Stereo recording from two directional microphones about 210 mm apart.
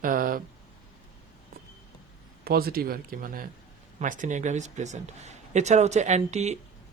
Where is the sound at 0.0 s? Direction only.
40° right (ahead or behind).